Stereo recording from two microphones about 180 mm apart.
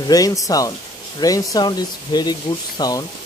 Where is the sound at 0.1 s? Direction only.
20° left (ahead or behind).